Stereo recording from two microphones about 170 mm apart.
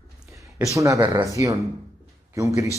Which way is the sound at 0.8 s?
15° right (ahead or behind).